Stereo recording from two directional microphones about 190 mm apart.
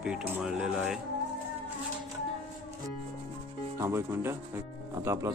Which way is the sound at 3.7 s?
15° right (ahead or behind).